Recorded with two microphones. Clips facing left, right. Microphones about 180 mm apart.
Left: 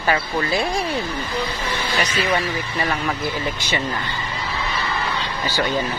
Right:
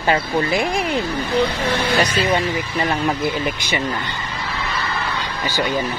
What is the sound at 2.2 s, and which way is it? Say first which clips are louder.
Speech: right 3 dB; 25° right (ahead or behind).